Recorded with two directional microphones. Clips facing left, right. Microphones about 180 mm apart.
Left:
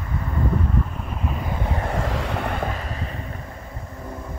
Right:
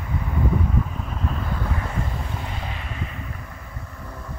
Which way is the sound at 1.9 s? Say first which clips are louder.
Left 5 dB; 90° left.